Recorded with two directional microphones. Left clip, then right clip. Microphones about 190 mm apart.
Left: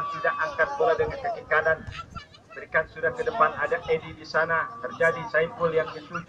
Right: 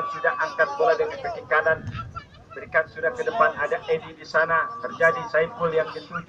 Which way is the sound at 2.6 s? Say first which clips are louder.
Right 2 dB; centre (ahead or behind).